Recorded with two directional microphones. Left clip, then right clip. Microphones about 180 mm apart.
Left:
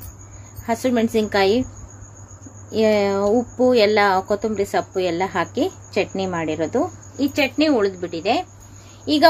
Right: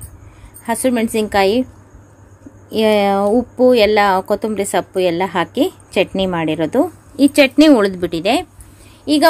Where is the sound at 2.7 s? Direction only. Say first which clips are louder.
Right 4 dB; 35° right (ahead or behind); by 8.4 s 65° right (ahead or behind).